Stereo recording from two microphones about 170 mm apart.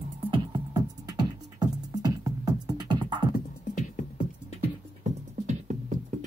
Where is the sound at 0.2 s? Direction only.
30° right (ahead or behind).